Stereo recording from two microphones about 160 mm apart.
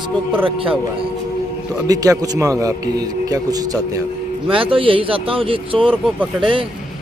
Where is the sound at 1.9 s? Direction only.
20° right (ahead or behind).